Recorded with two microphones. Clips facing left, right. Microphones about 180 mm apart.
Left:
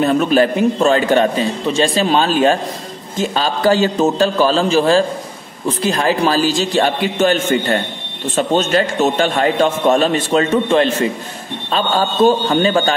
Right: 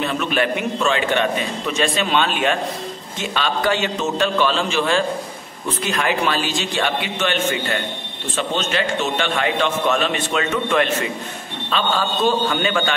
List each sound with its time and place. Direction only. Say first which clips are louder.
0.0 s a man's voice: left 8 dB; 40° left (ahead or behind)